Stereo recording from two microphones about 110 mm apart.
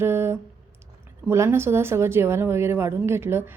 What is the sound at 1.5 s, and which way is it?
Speech, 20° right (ahead or behind).